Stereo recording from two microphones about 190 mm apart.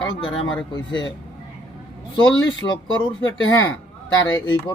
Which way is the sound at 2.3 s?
90° left.